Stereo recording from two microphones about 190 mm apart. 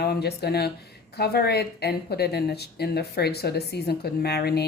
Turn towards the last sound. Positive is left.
turn(degrees=55)  # may be behind; listen again after turning